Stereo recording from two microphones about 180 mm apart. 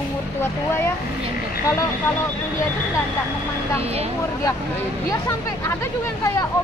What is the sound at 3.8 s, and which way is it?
Speech, 35° right (ahead or behind).